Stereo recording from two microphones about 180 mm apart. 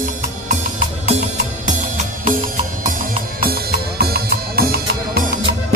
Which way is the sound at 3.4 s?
55° right (ahead or behind).